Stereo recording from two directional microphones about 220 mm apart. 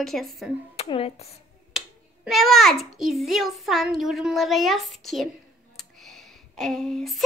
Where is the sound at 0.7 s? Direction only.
25° left (ahead or behind).